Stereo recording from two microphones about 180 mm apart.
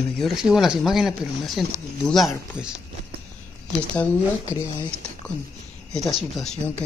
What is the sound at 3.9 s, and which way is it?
Speech, 10° left (ahead or behind).